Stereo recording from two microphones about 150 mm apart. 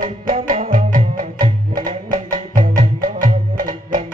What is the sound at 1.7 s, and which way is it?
Music, 65° right (ahead or behind).